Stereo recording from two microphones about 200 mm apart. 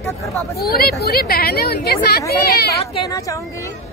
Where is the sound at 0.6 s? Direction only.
50° left (ahead or behind).